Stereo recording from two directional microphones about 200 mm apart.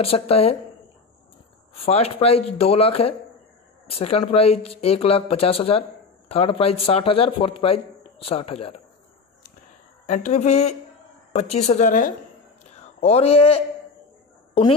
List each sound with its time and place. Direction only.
0.0 s speech: 30° left (ahead or behind)
1.8 s speech: 30° left (ahead or behind)
10.0 s speech: 35° left (ahead or behind)